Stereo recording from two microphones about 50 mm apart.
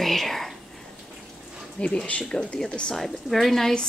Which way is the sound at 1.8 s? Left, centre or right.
Centre.